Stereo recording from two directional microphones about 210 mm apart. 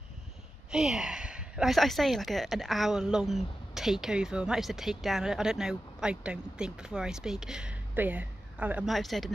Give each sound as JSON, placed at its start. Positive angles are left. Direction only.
{"t": 0.7, "sound": "speech", "side_deg": -5}